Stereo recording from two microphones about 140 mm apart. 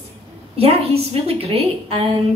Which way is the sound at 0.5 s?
45° right (ahead or behind).